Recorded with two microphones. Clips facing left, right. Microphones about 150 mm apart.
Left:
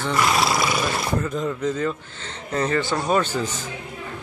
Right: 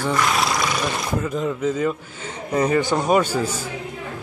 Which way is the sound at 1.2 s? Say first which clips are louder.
Right 2 dB; 5° right (ahead or behind).